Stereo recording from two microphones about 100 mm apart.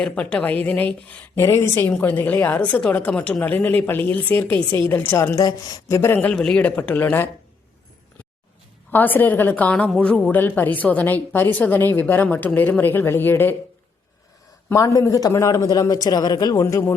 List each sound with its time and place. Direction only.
0.0 s a woman's voice: 10° left (ahead or behind)
1.4 s a woman's voice: 30° left (ahead or behind)
5.5 s a man's voice: 40° left (ahead or behind)
6.3 s a woman's voice: 10° left (ahead or behind)
8.9 s a woman's voice: 20° left (ahead or behind)
14.7 s a man's voice: 35° left (ahead or behind)